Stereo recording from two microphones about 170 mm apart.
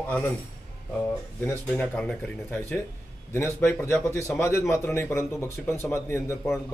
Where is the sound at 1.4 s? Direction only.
10° left (ahead or behind).